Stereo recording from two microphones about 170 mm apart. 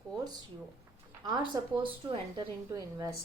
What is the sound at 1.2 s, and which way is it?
A woman's voice, 25° right (ahead or behind).